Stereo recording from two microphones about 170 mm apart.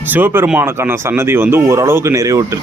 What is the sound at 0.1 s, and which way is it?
Speech, 10° right (ahead or behind).